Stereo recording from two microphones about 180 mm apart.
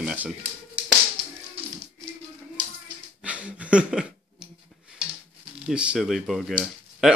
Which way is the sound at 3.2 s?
5° right (ahead or behind).